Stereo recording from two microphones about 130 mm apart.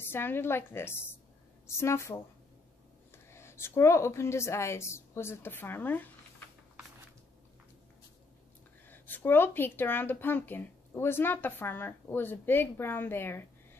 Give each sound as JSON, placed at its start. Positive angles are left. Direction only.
{"t": 0.0, "sound": "a woman's voice", "side_deg": 15}
{"t": 3.3, "sound": "a woman's voice", "side_deg": 20}
{"t": 8.8, "sound": "speech", "side_deg": 15}